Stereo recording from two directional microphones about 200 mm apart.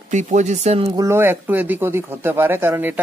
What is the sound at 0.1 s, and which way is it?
Speech, 35° right (ahead or behind).